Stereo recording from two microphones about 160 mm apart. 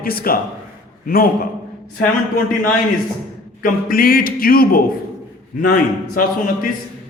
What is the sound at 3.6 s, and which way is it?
A man's voice, 60° left (ahead or behind).